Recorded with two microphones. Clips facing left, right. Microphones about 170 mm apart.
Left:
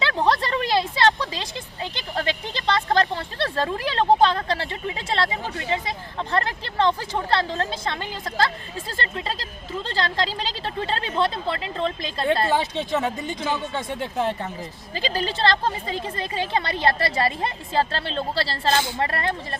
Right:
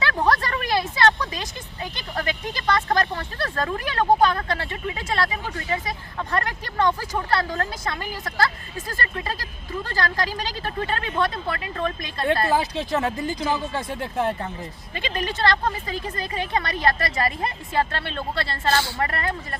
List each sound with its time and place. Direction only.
0.3 s a woman's voice: 25° left (ahead or behind)
12.7 s speech: centre (ahead or behind)
14.9 s speech: 30° left (ahead or behind)